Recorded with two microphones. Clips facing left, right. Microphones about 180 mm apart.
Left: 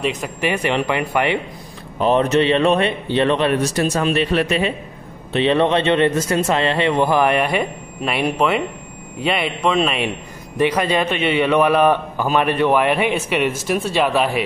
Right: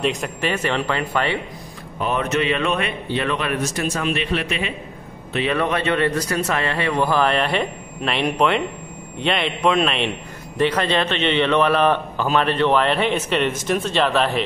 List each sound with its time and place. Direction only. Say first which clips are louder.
0.0 s a man's voice: even; centre (ahead or behind)
0.4 s a man's voice: left 4 dB; 15° left (ahead or behind)
2.0 s a man's voice: left 6 dB; 30° left (ahead or behind)
5.3 s a man's voice: left 5 dB; 25° left (ahead or behind); by 14.4 s 10° left (ahead or behind)